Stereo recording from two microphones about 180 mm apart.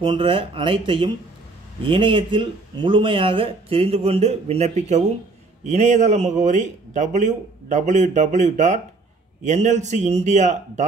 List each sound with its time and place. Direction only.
0.0 s a man's voice: 30° right (ahead or behind)